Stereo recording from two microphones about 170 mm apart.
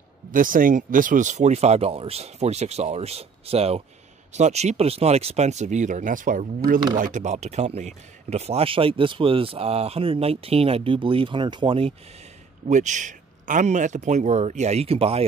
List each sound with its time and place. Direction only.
0.3 s speech: 55° right (ahead or behind); by 11.9 s 30° right (ahead or behind)
12.6 s speech: 45° right (ahead or behind)